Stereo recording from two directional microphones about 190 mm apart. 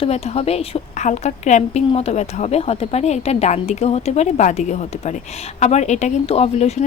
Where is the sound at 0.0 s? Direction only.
35° left (ahead or behind).